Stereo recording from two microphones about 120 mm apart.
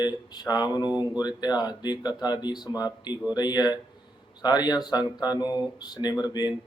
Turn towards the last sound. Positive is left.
turn(degrees=35)  # may be behind; listen again after turning